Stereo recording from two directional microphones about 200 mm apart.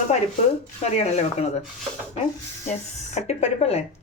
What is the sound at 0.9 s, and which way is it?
Speech, 35° left (ahead or behind).